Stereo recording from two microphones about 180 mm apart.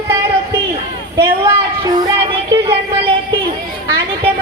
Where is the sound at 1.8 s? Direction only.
25° right (ahead or behind).